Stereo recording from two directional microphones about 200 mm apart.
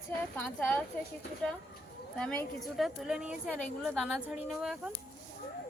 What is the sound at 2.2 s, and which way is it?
A woman's voice, 5° left (ahead or behind).